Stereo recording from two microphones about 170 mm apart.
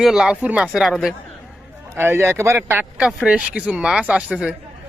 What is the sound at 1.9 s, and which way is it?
Speech, 15° right (ahead or behind).